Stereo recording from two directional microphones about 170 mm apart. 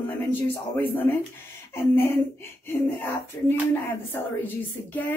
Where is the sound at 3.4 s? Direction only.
20° left (ahead or behind).